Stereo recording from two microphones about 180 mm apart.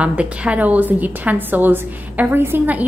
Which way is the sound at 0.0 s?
5° right (ahead or behind).